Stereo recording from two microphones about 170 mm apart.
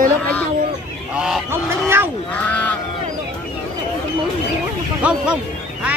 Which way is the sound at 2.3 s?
10° left (ahead or behind).